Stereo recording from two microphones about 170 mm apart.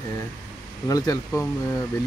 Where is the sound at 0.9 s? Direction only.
20° left (ahead or behind).